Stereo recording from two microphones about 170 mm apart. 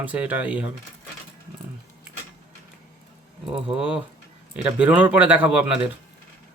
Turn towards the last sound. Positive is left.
turn(degrees=-5)  # may be behind; listen again after turning